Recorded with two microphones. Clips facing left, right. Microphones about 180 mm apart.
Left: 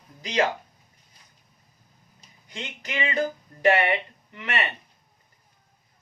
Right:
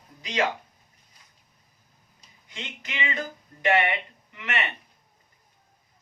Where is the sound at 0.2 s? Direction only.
40° left (ahead or behind).